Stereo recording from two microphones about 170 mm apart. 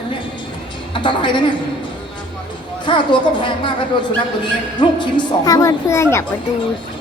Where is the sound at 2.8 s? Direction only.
30° left (ahead or behind).